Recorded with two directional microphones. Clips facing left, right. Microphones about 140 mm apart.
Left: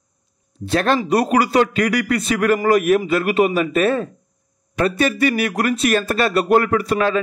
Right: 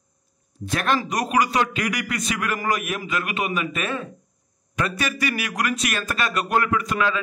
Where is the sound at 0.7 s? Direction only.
30° left (ahead or behind).